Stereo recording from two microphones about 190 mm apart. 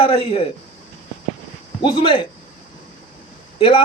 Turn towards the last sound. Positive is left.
turn(degrees=30)  # may be behind; listen again after turning